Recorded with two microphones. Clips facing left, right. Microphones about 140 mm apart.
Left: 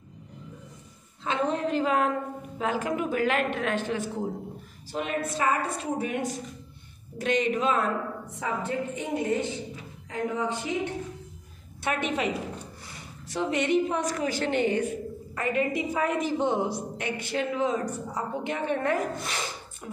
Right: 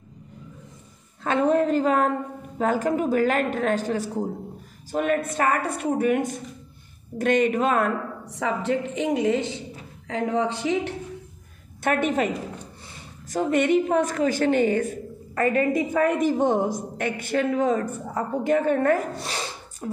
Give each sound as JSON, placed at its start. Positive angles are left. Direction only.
{"t": 1.2, "sound": "a woman's voice", "side_deg": -50}
{"t": 4.9, "sound": "a woman's voice", "side_deg": -50}
{"t": 8.3, "sound": "a woman's voice", "side_deg": -90}
{"t": 11.8, "sound": "a woman's voice", "side_deg": -50}
{"t": 13.3, "sound": "a woman's voice", "side_deg": -50}
{"t": 19.1, "sound": "snort", "side_deg": -30}